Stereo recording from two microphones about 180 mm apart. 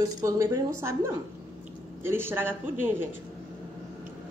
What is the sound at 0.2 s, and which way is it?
A woman's voice, 20° right (ahead or behind).